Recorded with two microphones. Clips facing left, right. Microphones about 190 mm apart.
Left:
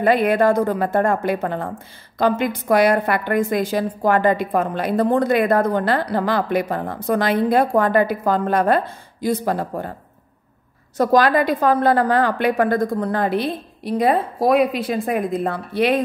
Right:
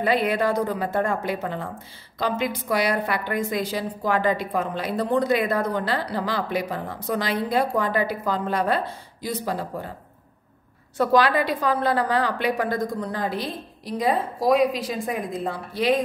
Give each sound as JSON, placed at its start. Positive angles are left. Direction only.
{"t": 0.0, "sound": "a woman's voice", "side_deg": 50}
{"t": 11.0, "sound": "a woman's voice", "side_deg": 45}